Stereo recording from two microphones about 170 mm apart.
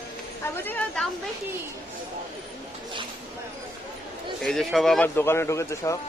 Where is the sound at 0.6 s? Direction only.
10° left (ahead or behind).